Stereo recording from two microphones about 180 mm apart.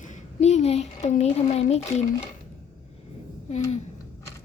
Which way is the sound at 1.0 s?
40° left (ahead or behind).